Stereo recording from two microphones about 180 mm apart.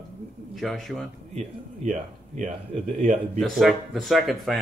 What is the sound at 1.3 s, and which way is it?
Speech, 40° right (ahead or behind).